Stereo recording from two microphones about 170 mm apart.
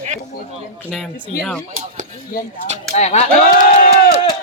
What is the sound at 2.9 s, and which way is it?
Speech, 40° left (ahead or behind).